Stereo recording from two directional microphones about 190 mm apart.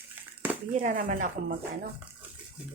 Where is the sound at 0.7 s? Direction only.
40° right (ahead or behind).